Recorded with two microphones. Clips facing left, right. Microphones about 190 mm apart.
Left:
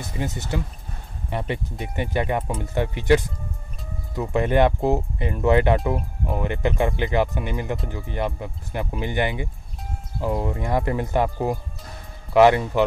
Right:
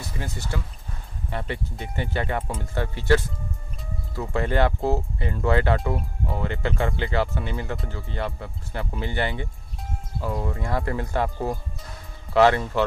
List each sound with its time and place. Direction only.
0.0 s speech: 20° left (ahead or behind)